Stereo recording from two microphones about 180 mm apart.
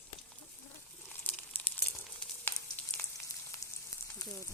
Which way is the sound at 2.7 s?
10° left (ahead or behind).